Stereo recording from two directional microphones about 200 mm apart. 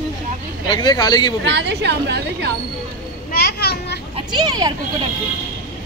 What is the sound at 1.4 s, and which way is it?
A woman's voice, 55° right (ahead or behind).